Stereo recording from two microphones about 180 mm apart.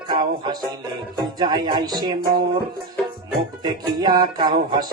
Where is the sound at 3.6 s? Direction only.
25° right (ahead or behind).